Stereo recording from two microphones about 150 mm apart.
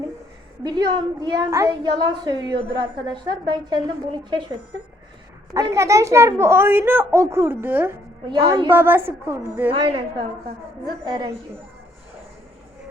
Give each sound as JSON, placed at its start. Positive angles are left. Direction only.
{"t": 0.6, "sound": "a woman's voice", "side_deg": -30}
{"t": 5.5, "sound": "a child's voice", "side_deg": -20}
{"t": 8.3, "sound": "a woman's voice", "side_deg": -30}
{"t": 8.7, "sound": "a child's voice", "side_deg": -15}
{"t": 9.7, "sound": "a woman's voice", "side_deg": -35}
{"t": 11.0, "sound": "a woman's voice", "side_deg": -25}